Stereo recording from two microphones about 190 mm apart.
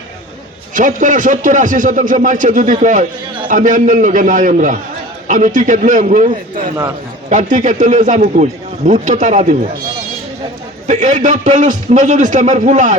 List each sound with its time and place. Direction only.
0.7 s a man's voice: 45° right (ahead or behind)
10.8 s a man's voice: 40° right (ahead or behind)